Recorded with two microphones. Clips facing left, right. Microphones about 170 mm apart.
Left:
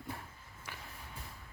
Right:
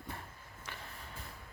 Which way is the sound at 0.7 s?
10° left (ahead or behind).